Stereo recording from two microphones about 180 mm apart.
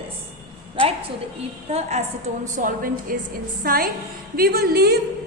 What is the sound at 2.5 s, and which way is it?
A woman's voice, 50° right (ahead or behind).